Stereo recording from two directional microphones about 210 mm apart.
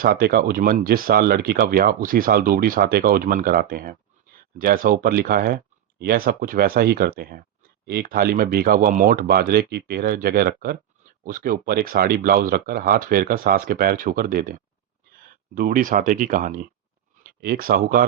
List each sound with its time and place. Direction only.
0.0 s speech: 45° right (ahead or behind)